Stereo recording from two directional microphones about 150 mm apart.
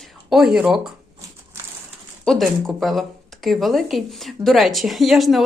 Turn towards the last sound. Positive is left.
turn(degrees=0)  # may be behind; listen again after turning